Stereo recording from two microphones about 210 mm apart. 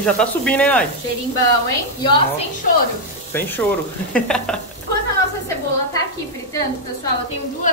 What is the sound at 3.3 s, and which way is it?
Speech, 10° left (ahead or behind).